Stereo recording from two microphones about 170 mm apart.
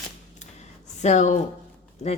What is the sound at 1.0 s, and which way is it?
Speech, 45° left (ahead or behind).